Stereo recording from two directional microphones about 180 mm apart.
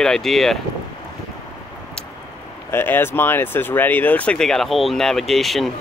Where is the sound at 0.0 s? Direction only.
Centre (ahead or behind).